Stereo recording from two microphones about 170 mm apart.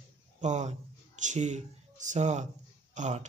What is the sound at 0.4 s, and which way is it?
Speech, 45° right (ahead or behind).